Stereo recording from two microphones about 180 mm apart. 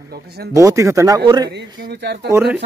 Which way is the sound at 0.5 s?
15° right (ahead or behind).